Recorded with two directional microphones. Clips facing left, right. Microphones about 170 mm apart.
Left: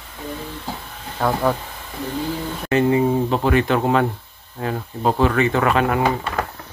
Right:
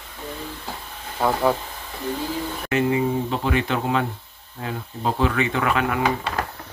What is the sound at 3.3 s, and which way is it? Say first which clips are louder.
Speech: left 5 dB; 50° left (ahead or behind).